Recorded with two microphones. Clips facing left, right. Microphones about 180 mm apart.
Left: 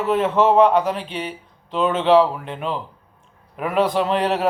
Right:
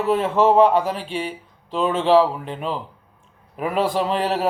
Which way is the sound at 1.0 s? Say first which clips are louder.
Right 2 dB; 40° right (ahead or behind).